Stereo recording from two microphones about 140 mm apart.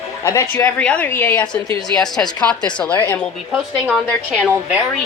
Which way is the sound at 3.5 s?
10° right (ahead or behind).